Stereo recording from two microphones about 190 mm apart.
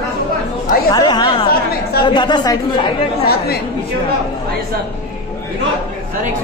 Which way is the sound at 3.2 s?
55° left (ahead or behind).